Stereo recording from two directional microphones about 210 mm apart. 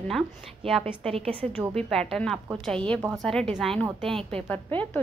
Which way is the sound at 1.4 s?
Centre (ahead or behind).